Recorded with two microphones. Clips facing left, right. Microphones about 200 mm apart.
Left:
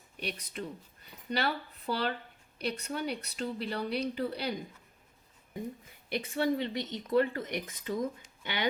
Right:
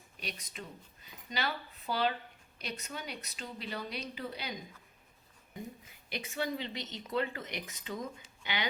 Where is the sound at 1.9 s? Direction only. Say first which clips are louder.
Even; 65° left (ahead or behind).